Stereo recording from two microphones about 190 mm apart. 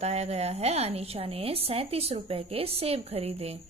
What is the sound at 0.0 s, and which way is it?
Speech, 35° right (ahead or behind).